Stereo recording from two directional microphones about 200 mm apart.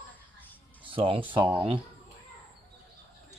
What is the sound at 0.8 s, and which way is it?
Speech, 25° right (ahead or behind).